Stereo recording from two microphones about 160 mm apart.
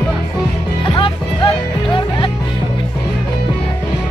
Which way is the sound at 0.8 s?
30° left (ahead or behind).